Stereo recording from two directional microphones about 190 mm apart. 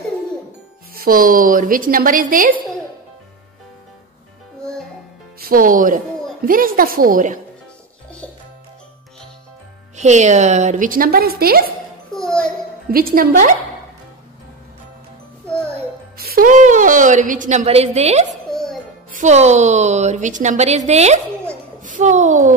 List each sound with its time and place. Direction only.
0.9 s a woman's voice: 50° right (ahead or behind)
5.4 s a woman's voice: 45° right (ahead or behind)
9.9 s a woman's voice: 40° right (ahead or behind)
12.1 s music: 5° left (ahead or behind)
12.9 s a woman's voice: 50° right (ahead or behind)
16.2 s a woman's voice: 50° right (ahead or behind); by 18.2 s 35° right (ahead or behind)
18.5 s music: centre (ahead or behind)
19.1 s a woman's voice: 35° right (ahead or behind)